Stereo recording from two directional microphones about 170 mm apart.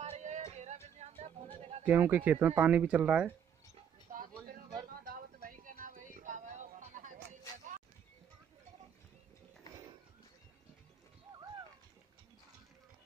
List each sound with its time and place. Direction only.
0.0 s music: 40° right (ahead or behind)
1.9 s speech: 10° right (ahead or behind)
4.1 s a sound: 50° right (ahead or behind)
4.8 s music: 55° right (ahead or behind)